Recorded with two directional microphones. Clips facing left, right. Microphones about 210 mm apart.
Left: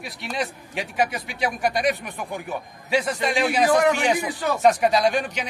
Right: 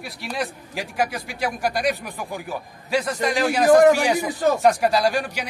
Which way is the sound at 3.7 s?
45° right (ahead or behind).